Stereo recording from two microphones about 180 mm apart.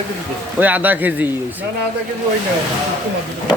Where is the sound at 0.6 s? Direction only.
10° right (ahead or behind).